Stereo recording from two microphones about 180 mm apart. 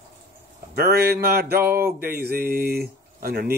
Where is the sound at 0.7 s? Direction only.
60° right (ahead or behind).